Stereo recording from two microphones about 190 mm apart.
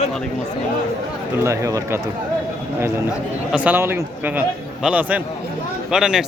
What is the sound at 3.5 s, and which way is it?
A man's voice, 10° right (ahead or behind).